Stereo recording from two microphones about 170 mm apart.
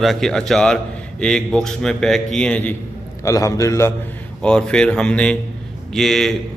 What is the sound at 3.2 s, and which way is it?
Speech, 20° left (ahead or behind).